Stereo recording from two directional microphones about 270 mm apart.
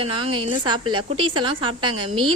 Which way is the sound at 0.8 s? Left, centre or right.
Right.